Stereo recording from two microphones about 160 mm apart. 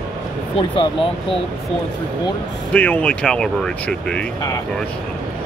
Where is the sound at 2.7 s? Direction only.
10° left (ahead or behind).